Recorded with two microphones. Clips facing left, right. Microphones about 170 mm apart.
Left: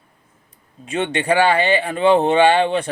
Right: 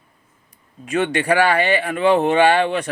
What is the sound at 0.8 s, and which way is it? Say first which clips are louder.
A man's voice: right 2 dB; 30° left (ahead or behind).